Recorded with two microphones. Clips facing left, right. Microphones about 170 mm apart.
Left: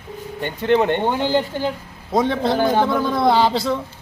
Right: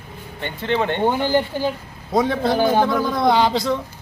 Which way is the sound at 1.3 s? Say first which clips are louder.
Even; 15° right (ahead or behind).